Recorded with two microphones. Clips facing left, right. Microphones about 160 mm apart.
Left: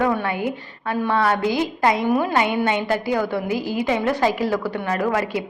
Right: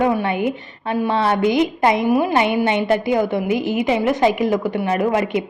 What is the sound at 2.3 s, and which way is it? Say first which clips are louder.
A woman's voice: right 3 dB; 20° right (ahead or behind).